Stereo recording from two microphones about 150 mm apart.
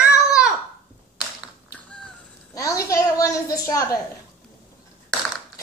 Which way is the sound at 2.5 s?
20° left (ahead or behind).